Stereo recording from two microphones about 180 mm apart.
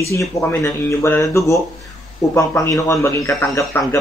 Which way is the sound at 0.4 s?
15° left (ahead or behind).